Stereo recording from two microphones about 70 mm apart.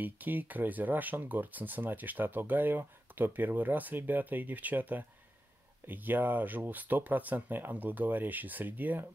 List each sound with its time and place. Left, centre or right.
0.0 s speech: right